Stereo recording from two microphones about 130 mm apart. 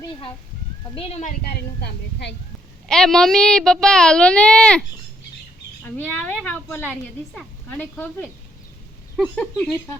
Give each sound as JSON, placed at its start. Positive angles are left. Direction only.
{"t": 0.9, "sound": "speech", "side_deg": 50}
{"t": 2.8, "sound": "a child's voice", "side_deg": 5}
{"t": 5.8, "sound": "speech", "side_deg": 15}
{"t": 9.1, "sound": "a child's voice", "side_deg": 0}